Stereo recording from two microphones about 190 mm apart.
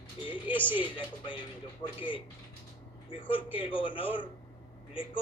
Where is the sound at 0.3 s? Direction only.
25° left (ahead or behind).